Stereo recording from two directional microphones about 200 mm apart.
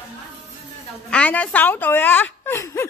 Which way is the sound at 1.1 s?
5° left (ahead or behind).